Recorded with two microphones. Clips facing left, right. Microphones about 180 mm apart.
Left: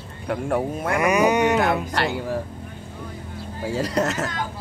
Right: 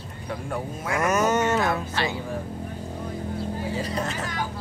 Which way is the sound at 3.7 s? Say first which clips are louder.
Left 6 dB; 85° left.